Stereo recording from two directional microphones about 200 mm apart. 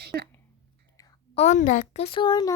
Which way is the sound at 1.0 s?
15° left (ahead or behind).